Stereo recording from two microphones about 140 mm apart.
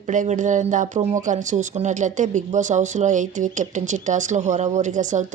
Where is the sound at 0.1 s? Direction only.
65° right (ahead or behind).